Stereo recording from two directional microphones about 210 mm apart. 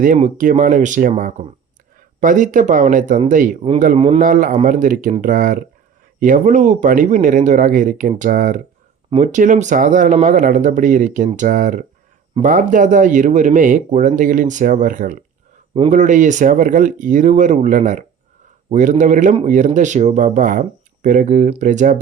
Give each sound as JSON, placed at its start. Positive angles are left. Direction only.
{"t": 0.0, "sound": "a man's voice", "side_deg": -40}
{"t": 4.2, "sound": "speech", "side_deg": -40}